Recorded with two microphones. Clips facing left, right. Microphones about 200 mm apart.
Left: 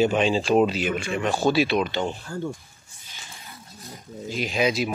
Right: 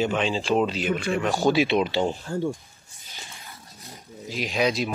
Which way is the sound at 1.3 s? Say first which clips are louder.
Even; 15° right (ahead or behind).